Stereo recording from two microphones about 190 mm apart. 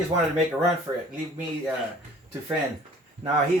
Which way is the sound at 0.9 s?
20° right (ahead or behind).